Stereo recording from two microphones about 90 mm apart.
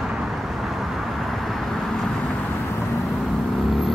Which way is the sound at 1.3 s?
Centre (ahead or behind).